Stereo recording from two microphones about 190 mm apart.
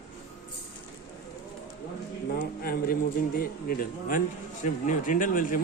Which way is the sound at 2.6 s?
50° left (ahead or behind).